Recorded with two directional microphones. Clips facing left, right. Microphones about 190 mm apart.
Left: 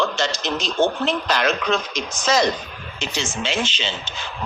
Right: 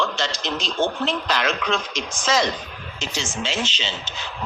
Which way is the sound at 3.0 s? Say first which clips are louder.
Left 2 dB; 60° left (ahead or behind).